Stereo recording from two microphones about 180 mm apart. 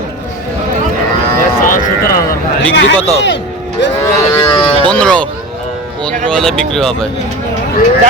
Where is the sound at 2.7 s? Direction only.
85° left.